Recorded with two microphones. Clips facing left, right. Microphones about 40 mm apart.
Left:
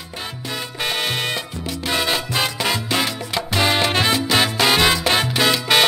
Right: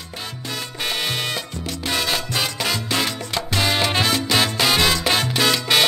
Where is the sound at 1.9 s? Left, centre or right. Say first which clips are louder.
Left 2 dB; centre.